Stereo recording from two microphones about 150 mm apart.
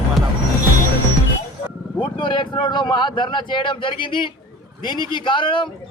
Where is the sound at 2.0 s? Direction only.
35° left (ahead or behind).